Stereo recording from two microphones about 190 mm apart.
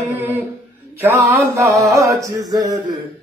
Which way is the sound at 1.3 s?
15° right (ahead or behind).